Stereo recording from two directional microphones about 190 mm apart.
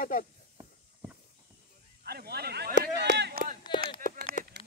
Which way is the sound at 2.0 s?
55° right (ahead or behind).